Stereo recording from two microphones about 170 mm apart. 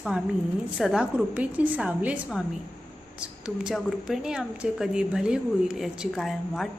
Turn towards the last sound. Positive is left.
turn(degrees=0)  # may be behind; listen again after turning